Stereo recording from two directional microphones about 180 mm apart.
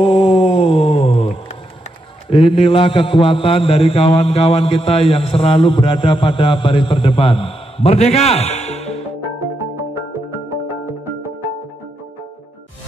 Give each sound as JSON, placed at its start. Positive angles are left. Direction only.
{"t": 0.0, "sound": "a sound", "side_deg": 30}
{"t": 2.2, "sound": "mantra", "side_deg": 30}
{"t": 9.2, "sound": "music", "side_deg": -10}